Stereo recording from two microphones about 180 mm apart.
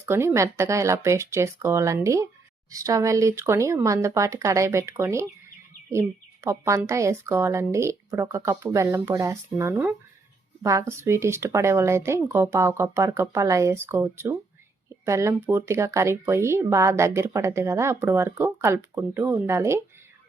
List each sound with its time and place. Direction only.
0.0 s speech: 15° right (ahead or behind)